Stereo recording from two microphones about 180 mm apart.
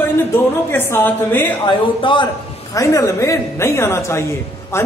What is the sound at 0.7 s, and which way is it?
Speech, 10° left (ahead or behind).